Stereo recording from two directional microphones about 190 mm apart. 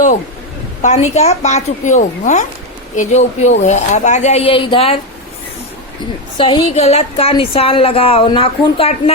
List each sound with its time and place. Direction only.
0.8 s speech: 35° left (ahead or behind)
6.3 s a woman's voice: 25° left (ahead or behind)